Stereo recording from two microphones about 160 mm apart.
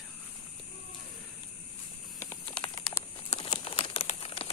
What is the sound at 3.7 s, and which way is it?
Crumpling, 35° left (ahead or behind).